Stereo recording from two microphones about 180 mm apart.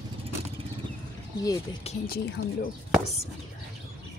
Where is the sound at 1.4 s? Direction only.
20° left (ahead or behind).